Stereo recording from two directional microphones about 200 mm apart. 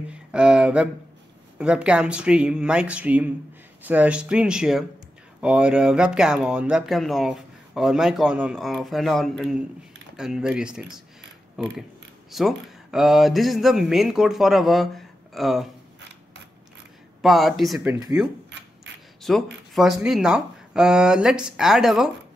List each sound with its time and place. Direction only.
0.1 s a sound: 5° right (ahead or behind)
1.6 s speech: 5° right (ahead or behind)
17.2 s speech: centre (ahead or behind)
17.8 s speech: 20° right (ahead or behind)
19.2 s speech: centre (ahead or behind)